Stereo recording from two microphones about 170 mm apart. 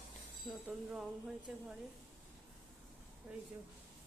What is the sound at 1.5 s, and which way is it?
Speech, 5° right (ahead or behind).